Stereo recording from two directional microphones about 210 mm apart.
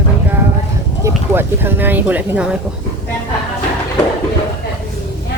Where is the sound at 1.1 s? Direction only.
10° right (ahead or behind).